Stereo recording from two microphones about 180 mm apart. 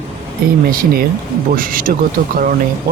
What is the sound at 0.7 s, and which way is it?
Speech, 55° right (ahead or behind).